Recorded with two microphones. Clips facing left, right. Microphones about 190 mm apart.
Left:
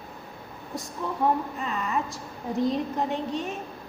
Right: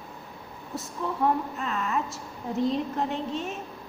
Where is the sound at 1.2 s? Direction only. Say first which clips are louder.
Left 1 dB; centre (ahead or behind).